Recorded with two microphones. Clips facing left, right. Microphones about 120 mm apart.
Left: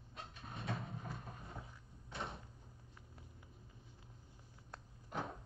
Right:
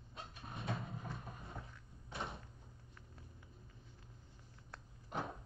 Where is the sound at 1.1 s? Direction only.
Centre (ahead or behind).